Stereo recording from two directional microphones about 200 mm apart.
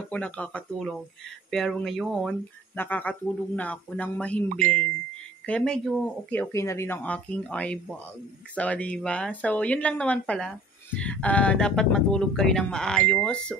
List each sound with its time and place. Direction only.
0.1 s speech: 5° left (ahead or behind)